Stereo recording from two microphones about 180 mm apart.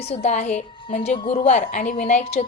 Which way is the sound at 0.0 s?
35° left (ahead or behind).